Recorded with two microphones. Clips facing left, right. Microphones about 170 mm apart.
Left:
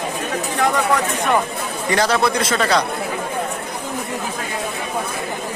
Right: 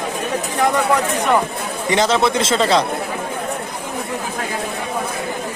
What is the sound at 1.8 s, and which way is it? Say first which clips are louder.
A man's voice: right 1 dB; 20° right (ahead or behind).